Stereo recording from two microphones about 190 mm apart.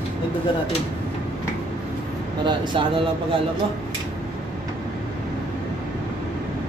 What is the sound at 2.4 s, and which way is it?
Speech, 25° right (ahead or behind).